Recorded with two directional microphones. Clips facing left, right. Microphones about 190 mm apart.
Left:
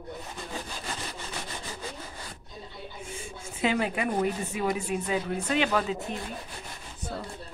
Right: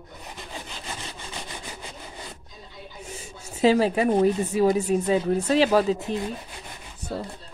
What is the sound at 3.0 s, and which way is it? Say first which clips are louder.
A woman's voice: even; 40° right (ahead or behind).